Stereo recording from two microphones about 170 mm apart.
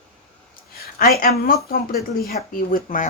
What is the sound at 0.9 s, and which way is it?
A woman's voice, 60° left (ahead or behind).